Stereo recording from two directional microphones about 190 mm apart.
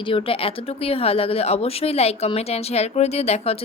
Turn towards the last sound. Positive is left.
turn(degrees=35)  # may be behind; listen again after turning